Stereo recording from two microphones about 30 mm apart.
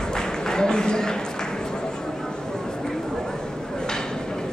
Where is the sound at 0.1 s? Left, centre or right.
Left.